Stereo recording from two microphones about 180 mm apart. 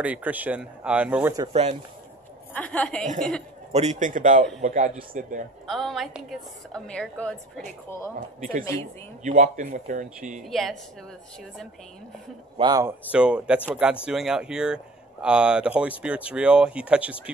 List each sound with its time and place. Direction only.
0.0 s speech: 10° right (ahead or behind)
1.5 s speech: 35° right (ahead or behind)
2.5 s a woman's voice: 5° left (ahead or behind)
3.7 s speech: 40° right (ahead or behind)
5.7 s a woman's voice: centre (ahead or behind)
8.4 s speech: 50° right (ahead or behind)
10.4 s a woman's voice: centre (ahead or behind)
12.5 s speech: 25° right (ahead or behind)
12.8 s a woman's voice: 5° right (ahead or behind)